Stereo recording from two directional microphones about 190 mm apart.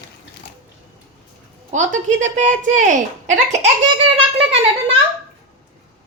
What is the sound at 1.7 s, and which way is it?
A woman's voice, 40° right (ahead or behind).